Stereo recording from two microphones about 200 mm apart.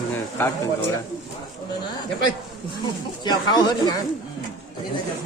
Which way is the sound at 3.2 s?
20° left (ahead or behind).